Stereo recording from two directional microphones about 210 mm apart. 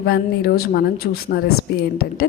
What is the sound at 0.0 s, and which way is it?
A woman's voice, 50° left (ahead or behind).